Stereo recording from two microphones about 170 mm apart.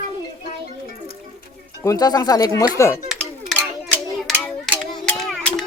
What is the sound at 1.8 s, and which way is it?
A child's voice, 20° left (ahead or behind).